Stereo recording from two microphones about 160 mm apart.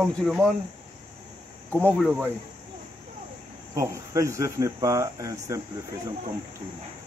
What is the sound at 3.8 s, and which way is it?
Speech, 20° right (ahead or behind).